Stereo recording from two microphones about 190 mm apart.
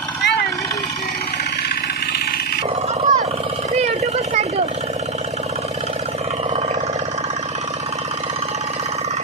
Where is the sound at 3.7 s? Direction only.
35° right (ahead or behind).